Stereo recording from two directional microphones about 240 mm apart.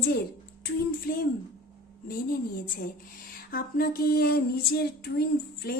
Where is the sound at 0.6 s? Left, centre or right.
Left.